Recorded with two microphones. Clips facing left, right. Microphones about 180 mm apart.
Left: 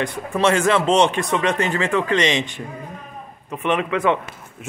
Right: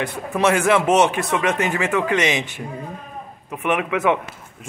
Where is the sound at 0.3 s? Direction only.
10° right (ahead or behind).